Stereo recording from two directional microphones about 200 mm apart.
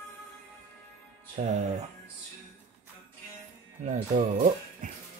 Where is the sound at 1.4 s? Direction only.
35° right (ahead or behind).